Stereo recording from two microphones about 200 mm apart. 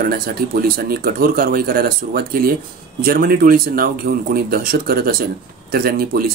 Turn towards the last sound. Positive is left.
turn(degrees=-45)  # may be behind; listen again after turning